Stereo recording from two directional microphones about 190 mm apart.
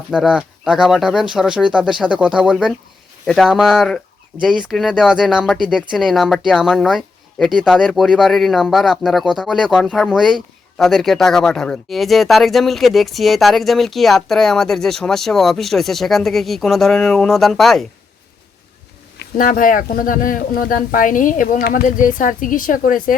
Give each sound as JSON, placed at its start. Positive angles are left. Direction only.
{"t": 0.1, "sound": "speech", "side_deg": -5}
{"t": 19.1, "sound": "speech", "side_deg": 55}